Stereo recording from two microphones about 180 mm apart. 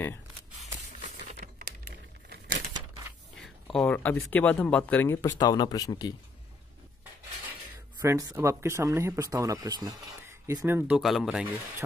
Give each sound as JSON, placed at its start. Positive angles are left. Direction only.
{"t": 1.6, "sound": "a sound", "side_deg": -65}
{"t": 3.3, "sound": "speech", "side_deg": 0}
{"t": 8.0, "sound": "speech", "side_deg": -20}
{"t": 10.8, "sound": "speech", "side_deg": -5}